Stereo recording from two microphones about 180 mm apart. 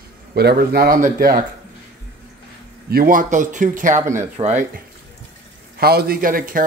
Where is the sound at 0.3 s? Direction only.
60° right (ahead or behind).